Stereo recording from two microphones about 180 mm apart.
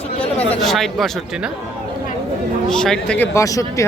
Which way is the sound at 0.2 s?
35° left (ahead or behind).